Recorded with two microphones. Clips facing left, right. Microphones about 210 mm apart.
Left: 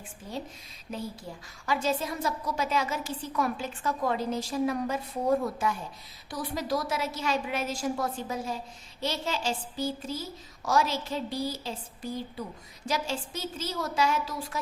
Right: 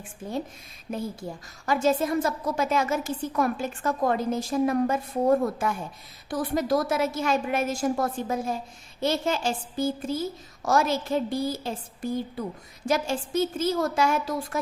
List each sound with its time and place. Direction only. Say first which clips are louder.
0.2 s a woman's voice: right 6 dB; 50° right (ahead or behind)